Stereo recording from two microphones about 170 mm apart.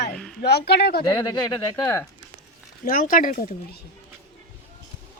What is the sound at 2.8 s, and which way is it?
Speech, 55° left (ahead or behind).